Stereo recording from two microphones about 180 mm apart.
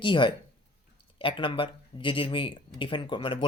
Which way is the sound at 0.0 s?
25° left (ahead or behind).